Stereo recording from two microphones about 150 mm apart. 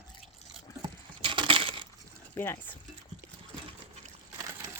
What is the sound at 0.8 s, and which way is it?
Keys jangling, 30° right (ahead or behind).